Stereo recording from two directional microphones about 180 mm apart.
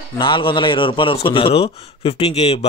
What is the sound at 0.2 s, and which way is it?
A man's voice, 30° left (ahead or behind).